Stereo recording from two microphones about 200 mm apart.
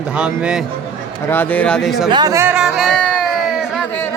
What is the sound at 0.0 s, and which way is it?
Speech, 5° right (ahead or behind).